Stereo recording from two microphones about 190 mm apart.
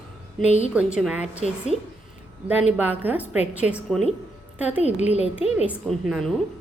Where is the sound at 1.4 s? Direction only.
30° right (ahead or behind).